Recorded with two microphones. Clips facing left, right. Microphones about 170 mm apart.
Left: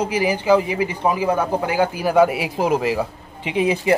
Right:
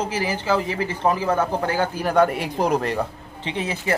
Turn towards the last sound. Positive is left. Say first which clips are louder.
# left 7 dB
turn(degrees=15)  # may be behind; listen again after turning